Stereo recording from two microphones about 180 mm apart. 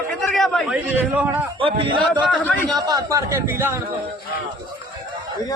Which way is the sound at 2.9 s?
20° right (ahead or behind).